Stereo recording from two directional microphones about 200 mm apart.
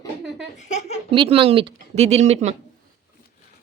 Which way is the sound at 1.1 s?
25° right (ahead or behind).